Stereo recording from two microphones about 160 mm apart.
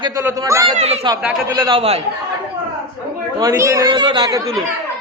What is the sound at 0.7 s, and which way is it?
A man's voice, 40° right (ahead or behind).